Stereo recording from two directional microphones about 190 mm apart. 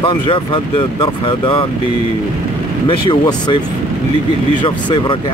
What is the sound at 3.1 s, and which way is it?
Speech, 20° left (ahead or behind).